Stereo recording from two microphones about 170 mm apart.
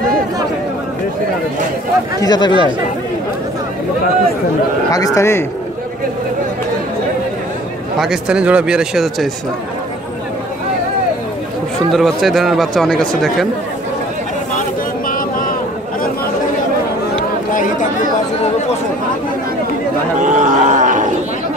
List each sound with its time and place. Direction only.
2.2 s speech: 25° left (ahead or behind)
4.9 s a man's voice: 20° left (ahead or behind)
8.0 s speech: 5° right (ahead or behind)
11.9 s speech: centre (ahead or behind)
15.0 s vehicle: 55° left (ahead or behind)
20.2 s a sound: 45° right (ahead or behind)